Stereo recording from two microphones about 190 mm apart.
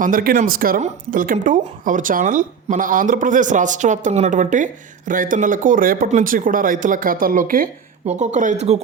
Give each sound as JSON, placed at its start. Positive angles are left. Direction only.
{"t": 0.0, "sound": "speech", "side_deg": -45}